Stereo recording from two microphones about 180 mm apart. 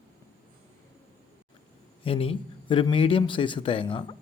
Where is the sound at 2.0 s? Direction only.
30° left (ahead or behind).